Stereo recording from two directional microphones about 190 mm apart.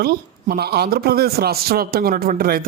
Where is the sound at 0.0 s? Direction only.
55° right (ahead or behind).